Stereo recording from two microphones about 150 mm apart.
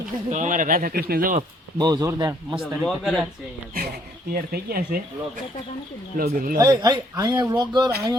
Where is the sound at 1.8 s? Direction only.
25° right (ahead or behind).